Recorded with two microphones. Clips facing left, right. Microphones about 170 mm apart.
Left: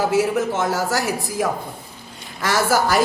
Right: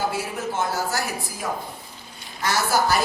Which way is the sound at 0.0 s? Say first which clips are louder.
Left 8 dB; 90° left.